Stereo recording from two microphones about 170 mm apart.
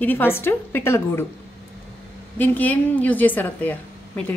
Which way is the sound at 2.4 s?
10° left (ahead or behind).